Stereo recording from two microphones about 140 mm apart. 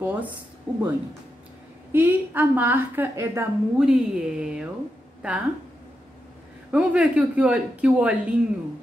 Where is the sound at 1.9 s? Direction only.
15° right (ahead or behind).